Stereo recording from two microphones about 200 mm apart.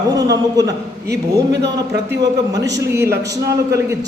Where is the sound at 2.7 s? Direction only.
15° right (ahead or behind).